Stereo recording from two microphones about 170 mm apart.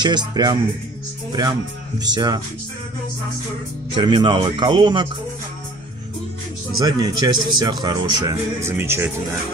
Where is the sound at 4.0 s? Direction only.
30° right (ahead or behind).